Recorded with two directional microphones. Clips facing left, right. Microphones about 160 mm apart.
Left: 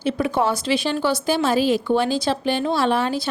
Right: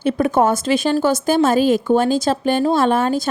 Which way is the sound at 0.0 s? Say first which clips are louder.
Right 5 dB; 50° right (ahead or behind).